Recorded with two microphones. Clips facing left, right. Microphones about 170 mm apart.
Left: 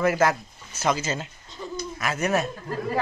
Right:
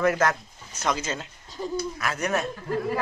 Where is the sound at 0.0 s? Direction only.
5° left (ahead or behind).